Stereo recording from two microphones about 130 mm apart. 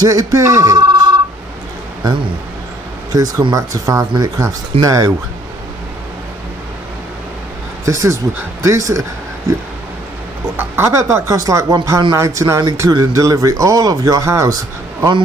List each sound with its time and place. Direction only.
0.0 s speech: 25° right (ahead or behind)
3.1 s speech: 25° right (ahead or behind)
7.8 s speech: 25° right (ahead or behind)
10.5 s speech: 20° right (ahead or behind)